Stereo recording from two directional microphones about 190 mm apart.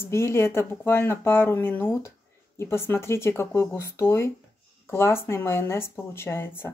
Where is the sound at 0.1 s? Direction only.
15° left (ahead or behind).